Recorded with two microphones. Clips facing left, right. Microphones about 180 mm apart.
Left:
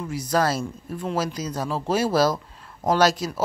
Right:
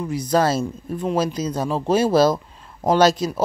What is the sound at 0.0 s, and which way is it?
Speech, 20° right (ahead or behind).